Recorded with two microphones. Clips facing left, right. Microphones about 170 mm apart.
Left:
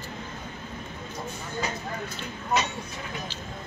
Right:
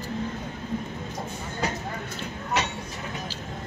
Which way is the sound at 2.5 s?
70° right (ahead or behind).